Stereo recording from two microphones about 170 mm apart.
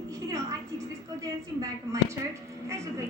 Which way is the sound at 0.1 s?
20° right (ahead or behind).